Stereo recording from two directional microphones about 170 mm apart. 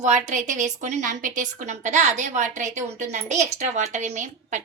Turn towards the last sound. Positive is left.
turn(degrees=-45)  # may be behind; listen again after turning